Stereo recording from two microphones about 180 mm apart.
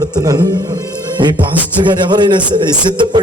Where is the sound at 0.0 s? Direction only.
20° right (ahead or behind).